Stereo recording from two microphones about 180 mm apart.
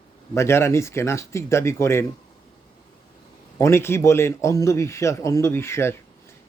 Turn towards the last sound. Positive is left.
turn(degrees=15)  # may be behind; listen again after turning